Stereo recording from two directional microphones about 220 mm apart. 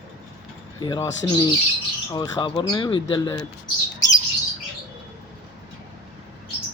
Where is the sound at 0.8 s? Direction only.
20° left (ahead or behind).